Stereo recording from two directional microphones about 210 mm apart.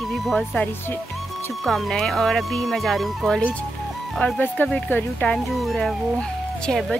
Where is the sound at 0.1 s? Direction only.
Centre (ahead or behind).